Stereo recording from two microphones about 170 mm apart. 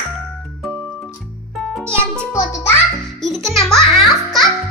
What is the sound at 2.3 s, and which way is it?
Speech, 15° left (ahead or behind).